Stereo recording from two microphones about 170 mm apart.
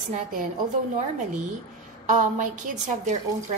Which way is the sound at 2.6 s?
50° right (ahead or behind).